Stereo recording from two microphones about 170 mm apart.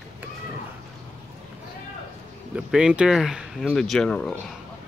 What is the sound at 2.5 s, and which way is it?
Speech, 5° right (ahead or behind).